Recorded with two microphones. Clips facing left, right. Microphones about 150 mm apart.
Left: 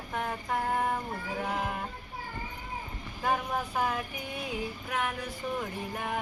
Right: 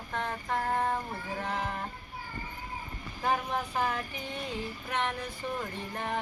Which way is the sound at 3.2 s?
5° left (ahead or behind).